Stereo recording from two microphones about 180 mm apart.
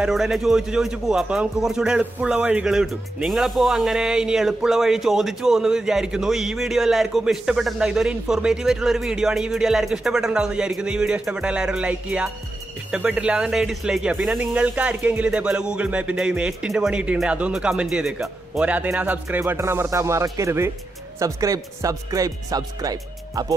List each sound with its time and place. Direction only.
0.0 s a man's voice: centre (ahead or behind); by 23.4 s 20° right (ahead or behind)